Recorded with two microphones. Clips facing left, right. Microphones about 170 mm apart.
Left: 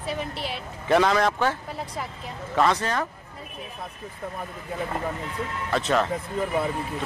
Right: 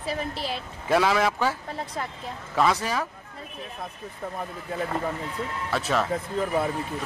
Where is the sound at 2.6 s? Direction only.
5° right (ahead or behind).